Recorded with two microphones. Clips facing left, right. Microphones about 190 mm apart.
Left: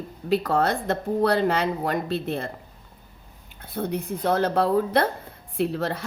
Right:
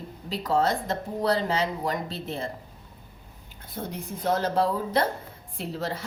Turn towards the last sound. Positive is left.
turn(degrees=60)  # may be behind; listen again after turning